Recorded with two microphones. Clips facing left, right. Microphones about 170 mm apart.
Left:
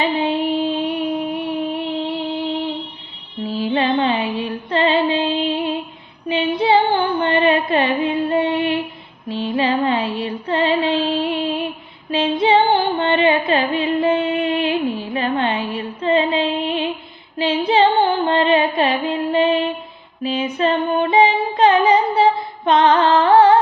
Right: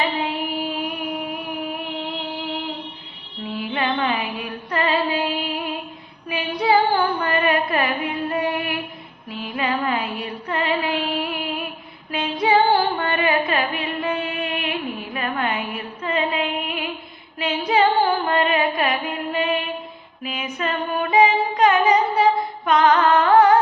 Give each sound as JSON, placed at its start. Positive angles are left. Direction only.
{"t": 0.0, "sound": "a sound", "side_deg": 25}
{"t": 3.4, "sound": "music", "side_deg": 30}
{"t": 6.2, "sound": "carnatic music", "side_deg": 25}
{"t": 9.3, "sound": "music", "side_deg": 30}